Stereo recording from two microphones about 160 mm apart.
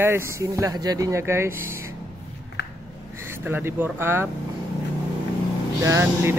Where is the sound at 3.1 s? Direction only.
15° right (ahead or behind).